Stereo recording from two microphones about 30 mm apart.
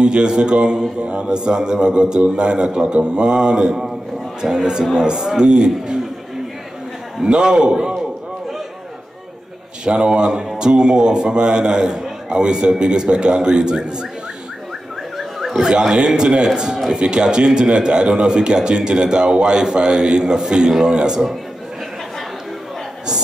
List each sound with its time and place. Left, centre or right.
0.0 s a man's voice: right
7.2 s a man's voice: right
9.8 s a man's voice: right
15.1 s a sound: centre
15.8 s a man's voice: right